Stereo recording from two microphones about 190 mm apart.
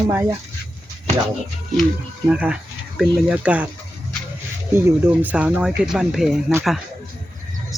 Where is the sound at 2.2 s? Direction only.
5° right (ahead or behind).